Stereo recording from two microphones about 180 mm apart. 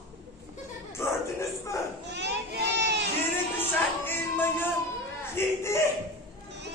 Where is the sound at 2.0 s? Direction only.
70° right (ahead or behind).